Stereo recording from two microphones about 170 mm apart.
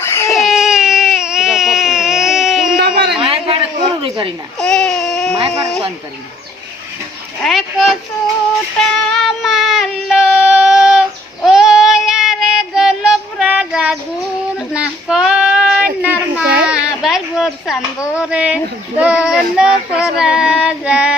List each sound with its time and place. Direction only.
0.0 s baby cry: 15° left (ahead or behind)
0.3 s baby cry: centre (ahead or behind)
2.8 s a sound: 70° right (ahead or behind)
3.2 s a sound: 35° right (ahead or behind)
4.0 s speech: 30° right (ahead or behind)
4.5 s baby cry: 5° left (ahead or behind)
7.4 s baby cry: centre (ahead or behind)
8.8 s child singing: centre (ahead or behind)
18.1 s speech: 5° right (ahead or behind)